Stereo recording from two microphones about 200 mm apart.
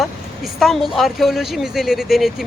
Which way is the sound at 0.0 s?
Centre (ahead or behind).